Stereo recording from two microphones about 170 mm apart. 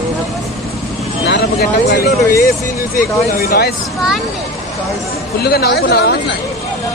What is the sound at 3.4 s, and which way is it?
Speech, 70° left (ahead or behind).